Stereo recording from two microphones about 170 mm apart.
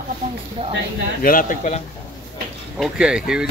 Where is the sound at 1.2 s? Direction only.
55° left (ahead or behind).